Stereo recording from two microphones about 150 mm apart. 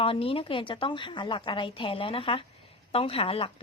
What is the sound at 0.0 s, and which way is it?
A woman's voice, 40° left (ahead or behind).